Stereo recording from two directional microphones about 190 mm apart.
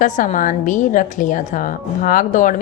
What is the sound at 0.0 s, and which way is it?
A woman's voice, 45° left (ahead or behind).